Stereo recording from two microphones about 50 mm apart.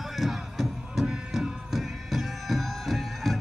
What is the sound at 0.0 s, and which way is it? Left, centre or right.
Music, centre.